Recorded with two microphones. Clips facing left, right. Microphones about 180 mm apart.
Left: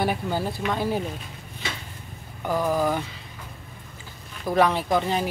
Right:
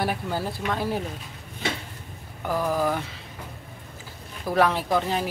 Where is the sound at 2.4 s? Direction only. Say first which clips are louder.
Left 1 dB; centre (ahead or behind).